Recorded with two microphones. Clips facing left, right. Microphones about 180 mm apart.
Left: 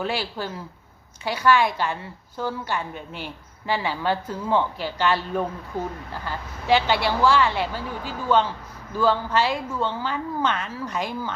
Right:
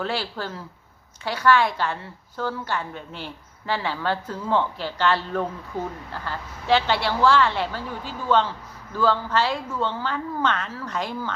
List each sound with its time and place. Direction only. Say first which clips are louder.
0.0 s a woman's voice: left 1 dB; 15° left (ahead or behind)